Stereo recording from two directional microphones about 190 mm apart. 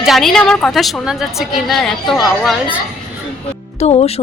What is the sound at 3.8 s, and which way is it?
Speech, 30° left (ahead or behind).